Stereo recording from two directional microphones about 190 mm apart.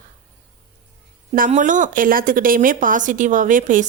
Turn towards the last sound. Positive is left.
turn(degrees=-45)  # may be behind; listen again after turning